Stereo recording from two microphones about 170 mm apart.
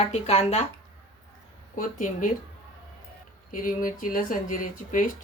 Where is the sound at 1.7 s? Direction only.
50° left (ahead or behind).